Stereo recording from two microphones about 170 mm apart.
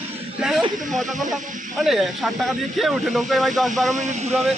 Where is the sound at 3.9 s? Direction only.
45° right (ahead or behind).